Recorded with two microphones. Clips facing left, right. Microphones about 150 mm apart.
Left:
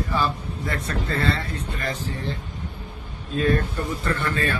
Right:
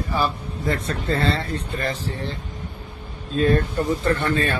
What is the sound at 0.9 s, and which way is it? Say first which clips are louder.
Speech: even; 30° right (ahead or behind).